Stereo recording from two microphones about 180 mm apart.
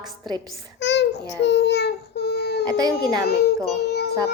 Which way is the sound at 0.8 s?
75° left (ahead or behind).